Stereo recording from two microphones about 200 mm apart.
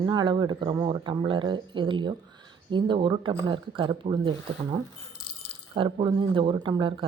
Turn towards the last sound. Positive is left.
turn(degrees=-25)  # may be behind; listen again after turning